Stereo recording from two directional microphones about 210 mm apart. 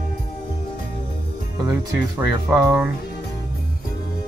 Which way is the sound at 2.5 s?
15° right (ahead or behind).